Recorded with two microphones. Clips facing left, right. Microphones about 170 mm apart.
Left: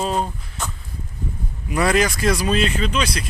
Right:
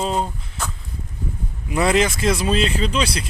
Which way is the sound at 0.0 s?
20° right (ahead or behind).